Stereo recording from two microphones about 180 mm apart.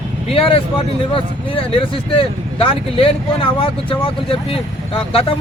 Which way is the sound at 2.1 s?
30° left (ahead or behind).